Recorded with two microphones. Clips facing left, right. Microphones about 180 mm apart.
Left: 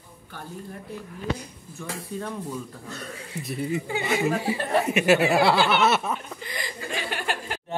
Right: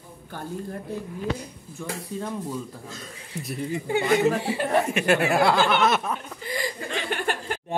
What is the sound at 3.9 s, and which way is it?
Speech, 55° right (ahead or behind).